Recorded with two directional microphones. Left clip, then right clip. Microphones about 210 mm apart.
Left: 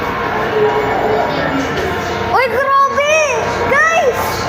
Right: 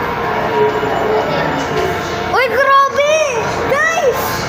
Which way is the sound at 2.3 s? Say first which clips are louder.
Right 2 dB; 25° right (ahead or behind).